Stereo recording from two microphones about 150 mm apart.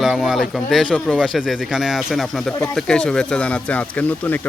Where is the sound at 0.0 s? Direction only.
Centre (ahead or behind).